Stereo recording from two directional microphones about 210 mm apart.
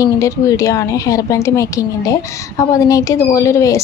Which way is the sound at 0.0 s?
15° left (ahead or behind).